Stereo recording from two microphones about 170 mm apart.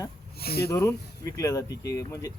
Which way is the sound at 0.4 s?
65° left (ahead or behind).